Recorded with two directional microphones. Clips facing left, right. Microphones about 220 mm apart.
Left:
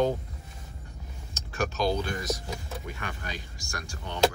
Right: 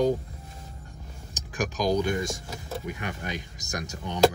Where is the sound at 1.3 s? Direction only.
15° right (ahead or behind).